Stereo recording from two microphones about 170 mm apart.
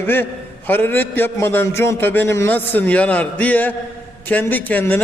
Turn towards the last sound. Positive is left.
turn(degrees=10)  # may be behind; listen again after turning